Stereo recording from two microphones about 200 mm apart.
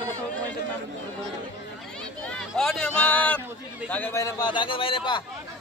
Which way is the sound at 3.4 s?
10° right (ahead or behind).